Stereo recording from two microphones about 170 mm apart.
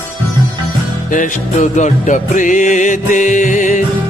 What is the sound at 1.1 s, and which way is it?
Music, 45° left (ahead or behind).